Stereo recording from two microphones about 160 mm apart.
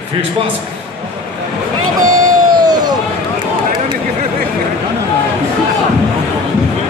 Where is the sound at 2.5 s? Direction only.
25° right (ahead or behind).